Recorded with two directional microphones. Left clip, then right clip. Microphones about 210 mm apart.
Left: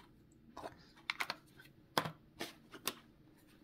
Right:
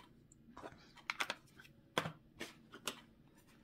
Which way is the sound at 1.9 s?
25° left (ahead or behind).